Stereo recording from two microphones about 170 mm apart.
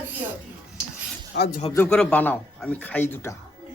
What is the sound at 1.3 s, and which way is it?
Speech, 75° left (ahead or behind).